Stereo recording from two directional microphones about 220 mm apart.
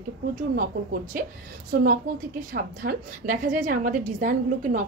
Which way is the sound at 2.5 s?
40° right (ahead or behind).